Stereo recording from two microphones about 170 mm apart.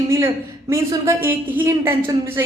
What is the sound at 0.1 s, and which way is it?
A woman's voice, 15° right (ahead or behind).